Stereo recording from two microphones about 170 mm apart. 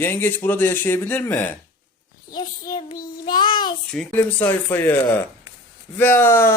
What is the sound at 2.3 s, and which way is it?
Speech, 25° left (ahead or behind).